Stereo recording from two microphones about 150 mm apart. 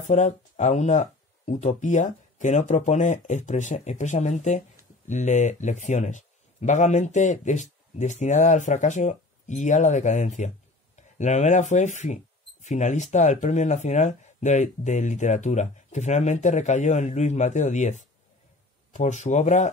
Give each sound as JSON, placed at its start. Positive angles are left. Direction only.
{"t": 0.0, "sound": "speech", "side_deg": 50}
{"t": 18.9, "sound": "speech", "side_deg": 50}